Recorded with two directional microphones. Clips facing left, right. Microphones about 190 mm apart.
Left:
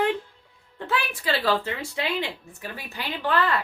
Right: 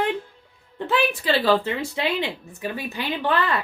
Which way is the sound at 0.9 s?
20° right (ahead or behind).